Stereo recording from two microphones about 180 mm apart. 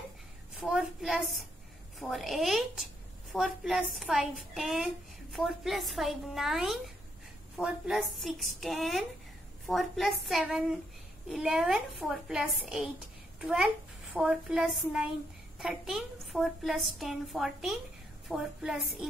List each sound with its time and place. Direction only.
0.7 s a woman's voice: 5° right (ahead or behind)